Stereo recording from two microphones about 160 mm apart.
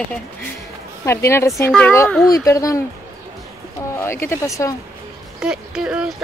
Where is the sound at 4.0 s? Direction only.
15° left (ahead or behind).